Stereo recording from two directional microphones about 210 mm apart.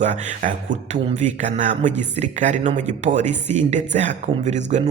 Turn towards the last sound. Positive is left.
turn(degrees=-35)  # may be behind; listen again after turning